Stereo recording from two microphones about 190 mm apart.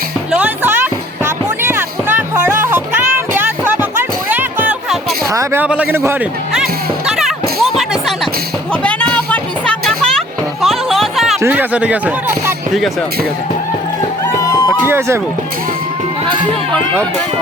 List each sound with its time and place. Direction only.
0.3 s music: 10° right (ahead or behind)
5.2 s speech: 15° right (ahead or behind)
6.5 s music: 5° right (ahead or behind)
11.3 s speech: 10° right (ahead or behind)
14.3 s music: 20° left (ahead or behind)
14.8 s speech: 15° right (ahead or behind)
16.7 s speech: 5° left (ahead or behind)